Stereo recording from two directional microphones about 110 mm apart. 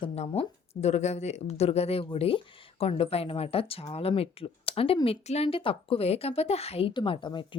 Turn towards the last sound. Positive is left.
turn(degrees=45)  # may be behind; listen again after turning